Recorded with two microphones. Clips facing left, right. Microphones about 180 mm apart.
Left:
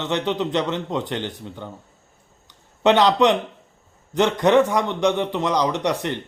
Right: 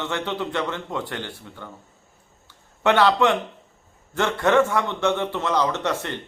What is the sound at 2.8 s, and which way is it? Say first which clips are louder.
A man's voice: left 2 dB; 20° left (ahead or behind).